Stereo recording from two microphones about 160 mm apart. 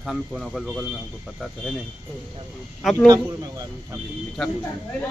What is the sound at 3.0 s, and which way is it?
Speech, 25° right (ahead or behind).